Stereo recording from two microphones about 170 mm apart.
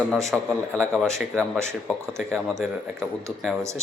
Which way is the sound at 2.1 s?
Centre (ahead or behind).